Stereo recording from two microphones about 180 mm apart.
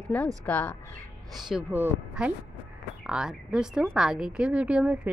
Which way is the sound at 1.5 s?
10° right (ahead or behind).